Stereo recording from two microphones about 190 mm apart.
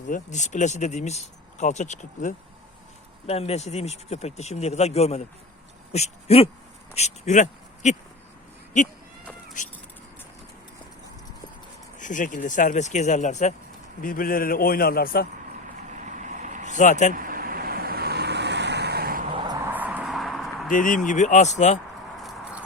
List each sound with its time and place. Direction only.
0.1 s speech: 40° left (ahead or behind)
11.9 s a man's voice: 40° left (ahead or behind)
16.0 s vehicle: 40° right (ahead or behind)
16.6 s speech: 40° left (ahead or behind)
17.2 s vehicle: 50° right (ahead or behind)
19.7 s a sound: 10° right (ahead or behind)
20.7 s speech: 45° left (ahead or behind)
22.2 s a sound: centre (ahead or behind)